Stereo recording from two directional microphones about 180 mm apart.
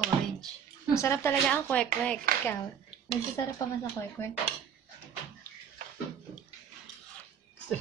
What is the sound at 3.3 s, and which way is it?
Speech, 15° left (ahead or behind).